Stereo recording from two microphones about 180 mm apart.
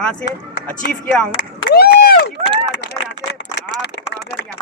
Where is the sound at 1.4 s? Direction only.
80° left; by 2.3 s 60° left (ahead or behind).